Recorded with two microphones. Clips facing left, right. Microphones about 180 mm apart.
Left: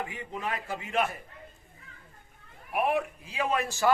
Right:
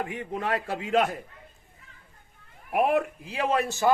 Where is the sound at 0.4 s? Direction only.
75° right (ahead or behind).